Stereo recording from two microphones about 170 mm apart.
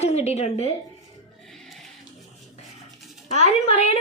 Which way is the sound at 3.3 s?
40° left (ahead or behind).